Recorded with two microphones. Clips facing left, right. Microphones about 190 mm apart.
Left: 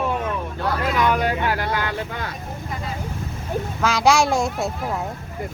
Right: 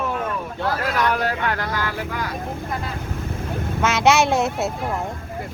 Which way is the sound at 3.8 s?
Centre (ahead or behind).